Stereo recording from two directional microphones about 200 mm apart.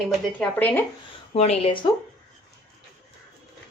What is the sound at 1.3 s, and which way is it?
Speech, 30° left (ahead or behind).